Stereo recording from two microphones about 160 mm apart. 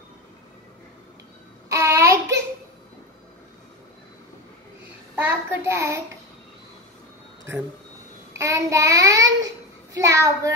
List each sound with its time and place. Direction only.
1.7 s child singing: 20° right (ahead or behind)
5.2 s child singing: 10° right (ahead or behind)
7.5 s child singing: 15° right (ahead or behind)
8.3 s a child's voice: 20° right (ahead or behind)